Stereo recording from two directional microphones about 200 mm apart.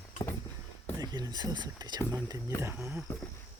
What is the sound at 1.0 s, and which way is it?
Speech, 20° right (ahead or behind).